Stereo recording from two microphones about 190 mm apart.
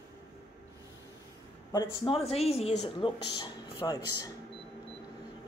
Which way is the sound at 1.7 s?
25° left (ahead or behind).